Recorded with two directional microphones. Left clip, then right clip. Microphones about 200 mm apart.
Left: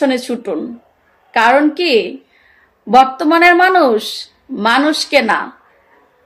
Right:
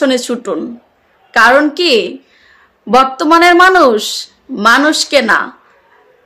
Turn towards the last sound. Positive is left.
turn(degrees=-20)  # may be behind; listen again after turning